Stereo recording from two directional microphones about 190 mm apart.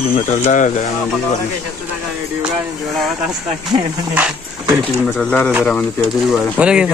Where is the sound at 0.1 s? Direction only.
40° left (ahead or behind).